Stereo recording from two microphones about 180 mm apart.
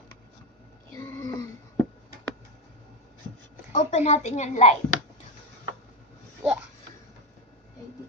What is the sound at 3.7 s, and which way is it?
A woman's voice, 40° left (ahead or behind).